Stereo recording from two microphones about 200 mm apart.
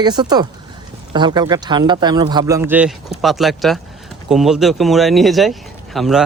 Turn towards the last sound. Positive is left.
turn(degrees=0)  # may be behind; listen again after turning